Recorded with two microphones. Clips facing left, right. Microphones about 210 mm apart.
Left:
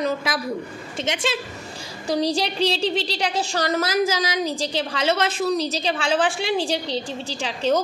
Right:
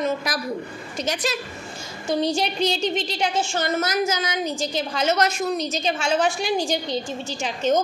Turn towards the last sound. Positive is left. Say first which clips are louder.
# even
turn(degrees=35)  # may be behind; listen again after turning